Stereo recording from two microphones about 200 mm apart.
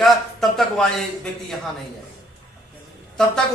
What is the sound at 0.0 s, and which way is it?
A man's voice, centre (ahead or behind).